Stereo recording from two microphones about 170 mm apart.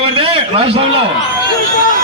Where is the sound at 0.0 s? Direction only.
30° right (ahead or behind).